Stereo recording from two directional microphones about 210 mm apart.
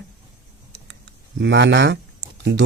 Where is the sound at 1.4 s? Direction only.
55° right (ahead or behind).